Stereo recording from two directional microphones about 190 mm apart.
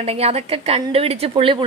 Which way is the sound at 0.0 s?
35° right (ahead or behind).